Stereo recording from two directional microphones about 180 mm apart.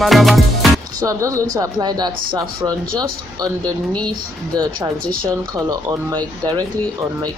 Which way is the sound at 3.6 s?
5° left (ahead or behind).